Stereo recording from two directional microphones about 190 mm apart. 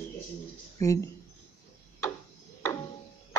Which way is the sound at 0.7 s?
15° left (ahead or behind).